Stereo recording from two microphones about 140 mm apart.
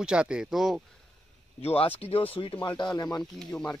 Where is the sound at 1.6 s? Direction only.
45° left (ahead or behind).